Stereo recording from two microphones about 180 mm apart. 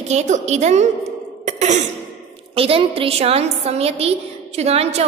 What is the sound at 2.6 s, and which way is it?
A woman's voice, 30° right (ahead or behind).